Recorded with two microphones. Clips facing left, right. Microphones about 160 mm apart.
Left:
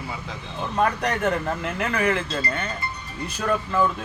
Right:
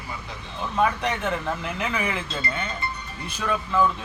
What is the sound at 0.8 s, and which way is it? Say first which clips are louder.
Speech: left 2 dB; centre (ahead or behind).